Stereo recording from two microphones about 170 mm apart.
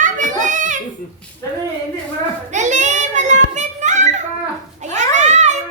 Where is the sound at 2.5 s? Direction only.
45° right (ahead or behind).